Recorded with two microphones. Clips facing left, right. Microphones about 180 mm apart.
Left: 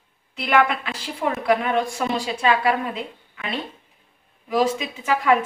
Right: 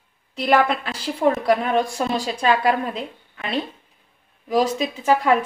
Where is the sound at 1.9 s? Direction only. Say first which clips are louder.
Right 1 dB; 40° right (ahead or behind).